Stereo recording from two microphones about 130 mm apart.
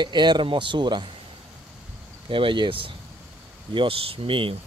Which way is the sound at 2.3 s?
40° right (ahead or behind).